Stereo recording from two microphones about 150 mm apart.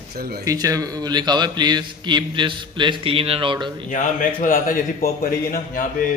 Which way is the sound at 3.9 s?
60° left (ahead or behind).